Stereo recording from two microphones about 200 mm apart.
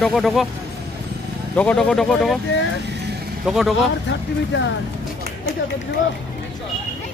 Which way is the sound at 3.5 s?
Centre (ahead or behind).